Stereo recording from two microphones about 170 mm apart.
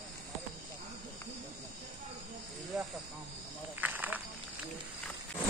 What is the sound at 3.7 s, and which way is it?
Cricket, 10° right (ahead or behind).